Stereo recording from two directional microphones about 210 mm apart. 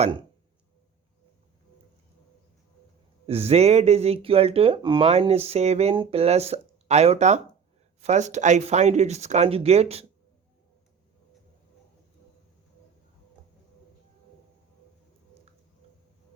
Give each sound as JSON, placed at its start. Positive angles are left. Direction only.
{"t": 0.0, "sound": "speech", "side_deg": -25}
{"t": 3.2, "sound": "speech", "side_deg": -30}